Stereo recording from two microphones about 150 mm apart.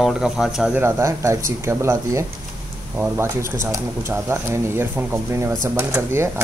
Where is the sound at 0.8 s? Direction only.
20° right (ahead or behind).